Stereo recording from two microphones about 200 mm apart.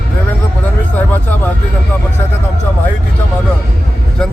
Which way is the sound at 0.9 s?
10° left (ahead or behind).